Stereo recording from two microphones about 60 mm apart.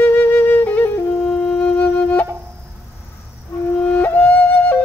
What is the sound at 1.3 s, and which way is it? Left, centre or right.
Flute, centre.